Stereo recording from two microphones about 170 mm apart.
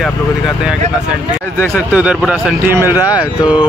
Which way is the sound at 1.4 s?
15° left (ahead or behind).